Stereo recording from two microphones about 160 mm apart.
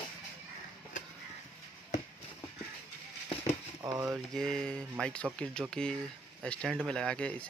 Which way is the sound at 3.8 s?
20° right (ahead or behind).